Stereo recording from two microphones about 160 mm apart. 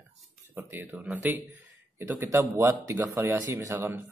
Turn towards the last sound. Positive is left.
turn(degrees=-15)  # may be behind; listen again after turning